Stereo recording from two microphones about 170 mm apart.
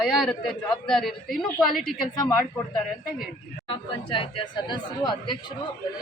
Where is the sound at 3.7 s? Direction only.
30° left (ahead or behind).